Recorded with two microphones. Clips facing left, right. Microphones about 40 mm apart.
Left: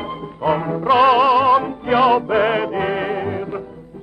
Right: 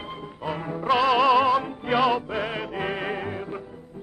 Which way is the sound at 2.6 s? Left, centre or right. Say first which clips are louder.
Left 9 dB; centre.